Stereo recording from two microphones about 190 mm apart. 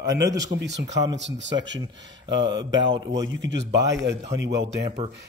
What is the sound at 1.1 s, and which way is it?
Speech, 70° right (ahead or behind).